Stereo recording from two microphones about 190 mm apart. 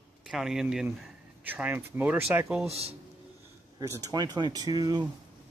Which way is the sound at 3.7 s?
15° right (ahead or behind).